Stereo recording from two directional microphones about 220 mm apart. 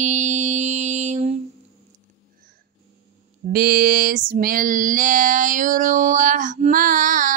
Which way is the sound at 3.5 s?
40° right (ahead or behind).